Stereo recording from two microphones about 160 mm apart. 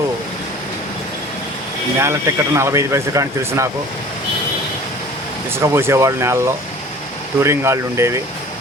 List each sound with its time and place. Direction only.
2.0 s speech: 15° right (ahead or behind)
5.5 s speech: 15° right (ahead or behind)